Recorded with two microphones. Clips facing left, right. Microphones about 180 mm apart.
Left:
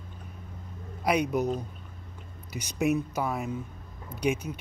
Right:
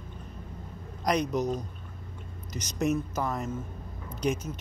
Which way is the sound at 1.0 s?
5° left (ahead or behind).